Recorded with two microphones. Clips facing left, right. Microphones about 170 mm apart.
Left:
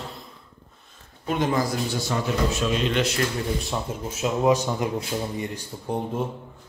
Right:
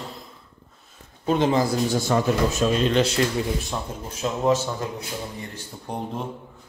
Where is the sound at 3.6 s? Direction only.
5° left (ahead or behind).